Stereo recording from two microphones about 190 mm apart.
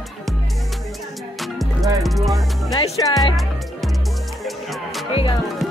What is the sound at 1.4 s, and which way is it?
Music, centre (ahead or behind).